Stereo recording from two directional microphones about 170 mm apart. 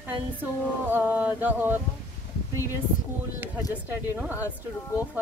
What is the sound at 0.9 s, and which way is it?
Speech, 10° right (ahead or behind).